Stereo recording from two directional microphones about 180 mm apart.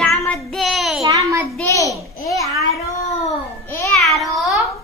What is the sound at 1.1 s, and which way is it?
Child singing, 15° right (ahead or behind).